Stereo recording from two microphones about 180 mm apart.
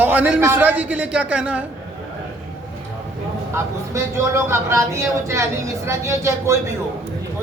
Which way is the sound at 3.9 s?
15° right (ahead or behind).